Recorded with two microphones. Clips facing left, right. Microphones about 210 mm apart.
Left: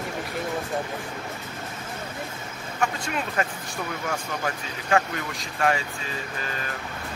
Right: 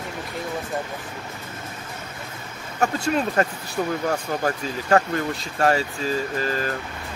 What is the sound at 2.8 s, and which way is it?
Speech, 40° right (ahead or behind).